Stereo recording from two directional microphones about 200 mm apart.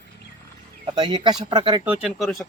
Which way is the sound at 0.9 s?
20° right (ahead or behind).